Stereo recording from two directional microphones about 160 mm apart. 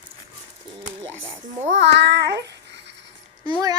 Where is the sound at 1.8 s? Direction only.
90° right.